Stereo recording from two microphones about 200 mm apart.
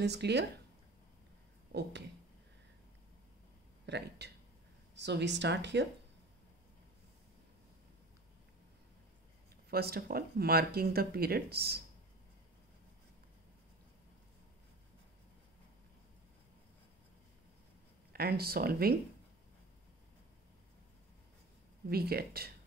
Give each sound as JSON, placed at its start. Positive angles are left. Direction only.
{"t": 0.0, "sound": "speech", "side_deg": -55}
{"t": 1.7, "sound": "speech", "side_deg": -60}
{"t": 3.8, "sound": "speech", "side_deg": -60}
{"t": 9.7, "sound": "speech", "side_deg": -50}
{"t": 18.1, "sound": "speech", "side_deg": -50}
{"t": 21.8, "sound": "speech", "side_deg": -50}